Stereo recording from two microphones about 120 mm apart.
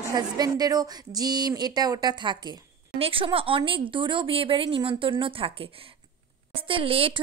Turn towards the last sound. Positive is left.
turn(degrees=-50)  # may be behind; listen again after turning